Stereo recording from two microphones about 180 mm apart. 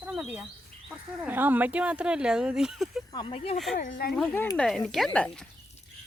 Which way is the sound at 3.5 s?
Centre (ahead or behind).